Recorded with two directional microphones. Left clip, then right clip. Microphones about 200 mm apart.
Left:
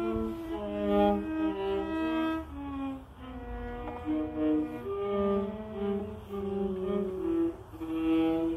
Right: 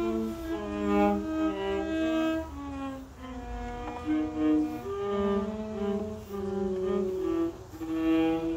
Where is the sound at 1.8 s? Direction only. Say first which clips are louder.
Right 3 dB; 25° right (ahead or behind).